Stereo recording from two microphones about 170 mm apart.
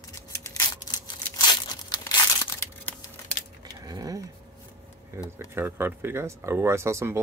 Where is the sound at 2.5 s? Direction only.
15° left (ahead or behind).